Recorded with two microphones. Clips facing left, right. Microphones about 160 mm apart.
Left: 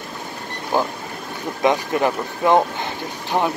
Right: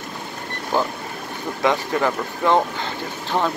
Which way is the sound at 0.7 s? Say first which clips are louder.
Left 1 dB; 15° left (ahead or behind).